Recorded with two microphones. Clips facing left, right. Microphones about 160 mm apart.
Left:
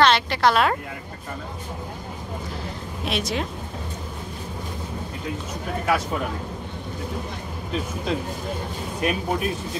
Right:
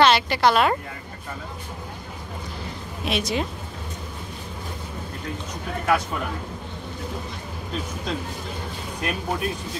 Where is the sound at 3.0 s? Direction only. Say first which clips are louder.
Right 1 dB; centre (ahead or behind).